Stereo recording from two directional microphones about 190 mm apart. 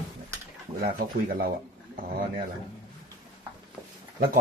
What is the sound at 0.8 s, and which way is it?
Speech, 50° right (ahead or behind).